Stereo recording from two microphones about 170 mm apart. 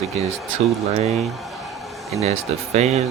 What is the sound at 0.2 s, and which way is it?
Speech, 40° right (ahead or behind).